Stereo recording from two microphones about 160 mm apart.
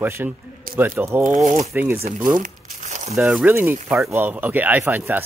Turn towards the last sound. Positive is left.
turn(degrees=-15)  # may be behind; listen again after turning